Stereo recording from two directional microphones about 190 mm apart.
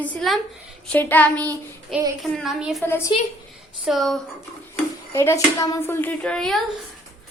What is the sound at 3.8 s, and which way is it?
Speech, centre (ahead or behind).